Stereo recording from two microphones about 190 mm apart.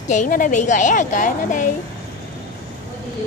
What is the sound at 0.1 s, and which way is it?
A woman's voice, 40° left (ahead or behind).